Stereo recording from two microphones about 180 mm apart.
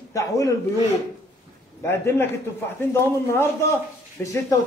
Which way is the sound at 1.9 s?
15° left (ahead or behind).